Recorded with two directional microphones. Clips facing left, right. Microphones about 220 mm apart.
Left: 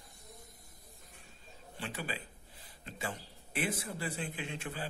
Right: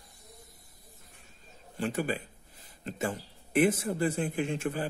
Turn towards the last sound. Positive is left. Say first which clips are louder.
# right 10 dB
turn(degrees=-45)  # may be behind; listen again after turning